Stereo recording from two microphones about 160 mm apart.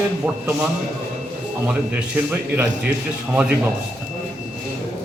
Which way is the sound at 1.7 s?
10° right (ahead or behind).